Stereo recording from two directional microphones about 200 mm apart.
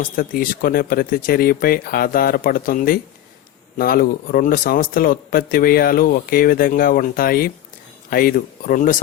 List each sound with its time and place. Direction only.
0.0 s a man's voice: 45° left (ahead or behind)